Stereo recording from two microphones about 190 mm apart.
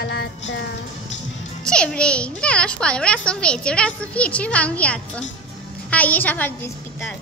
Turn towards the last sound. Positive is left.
turn(degrees=10)  # may be behind; listen again after turning